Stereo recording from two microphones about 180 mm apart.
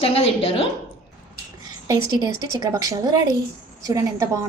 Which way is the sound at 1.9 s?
20° right (ahead or behind).